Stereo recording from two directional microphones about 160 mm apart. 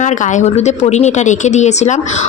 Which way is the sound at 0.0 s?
50° left (ahead or behind).